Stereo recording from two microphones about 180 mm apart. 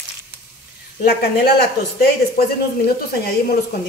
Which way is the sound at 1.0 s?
60° left (ahead or behind).